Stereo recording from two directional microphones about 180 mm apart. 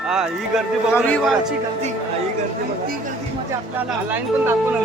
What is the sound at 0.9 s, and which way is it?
Speech, 10° left (ahead or behind).